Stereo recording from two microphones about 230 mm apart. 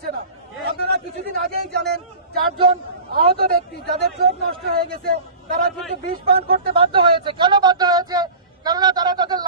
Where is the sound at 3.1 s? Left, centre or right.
Right.